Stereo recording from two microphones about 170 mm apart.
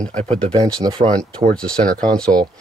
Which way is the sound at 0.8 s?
30° right (ahead or behind).